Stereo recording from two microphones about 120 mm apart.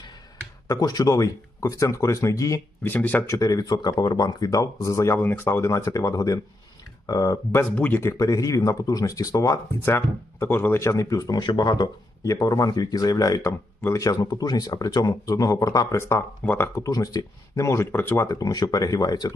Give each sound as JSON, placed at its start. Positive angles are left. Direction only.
{"t": 0.7, "sound": "speech", "side_deg": 30}
{"t": 2.9, "sound": "speech", "side_deg": 15}
{"t": 3.3, "sound": "speech", "side_deg": 30}
{"t": 7.6, "sound": "speech", "side_deg": 15}
{"t": 8.2, "sound": "speech", "side_deg": 30}